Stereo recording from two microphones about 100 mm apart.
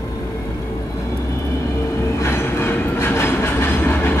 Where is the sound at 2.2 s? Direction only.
25° left (ahead or behind).